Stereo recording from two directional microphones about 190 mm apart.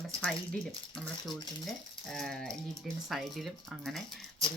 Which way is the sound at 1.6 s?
Centre (ahead or behind).